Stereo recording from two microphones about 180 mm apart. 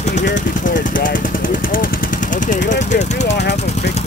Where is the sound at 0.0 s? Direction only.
40° left (ahead or behind).